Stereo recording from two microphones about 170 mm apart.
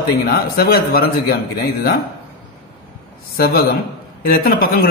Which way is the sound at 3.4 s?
60° left (ahead or behind).